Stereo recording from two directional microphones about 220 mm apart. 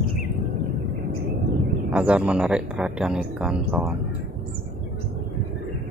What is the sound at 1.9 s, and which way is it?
Speech, 5° right (ahead or behind).